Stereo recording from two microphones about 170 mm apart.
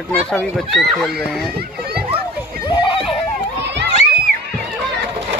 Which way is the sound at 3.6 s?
90° right.